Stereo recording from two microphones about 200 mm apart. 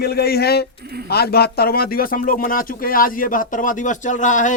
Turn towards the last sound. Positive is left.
turn(degrees=40)  # may be behind; listen again after turning